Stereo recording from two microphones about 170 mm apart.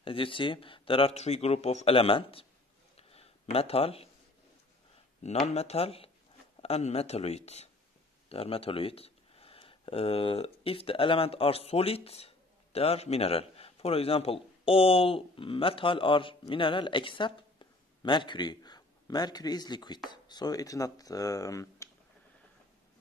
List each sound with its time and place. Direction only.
0.0 s speech: 30° left (ahead or behind)
3.0 s a sound: 35° left (ahead or behind)
5.5 s speech: 40° left (ahead or behind); by 21.8 s 20° left (ahead or behind)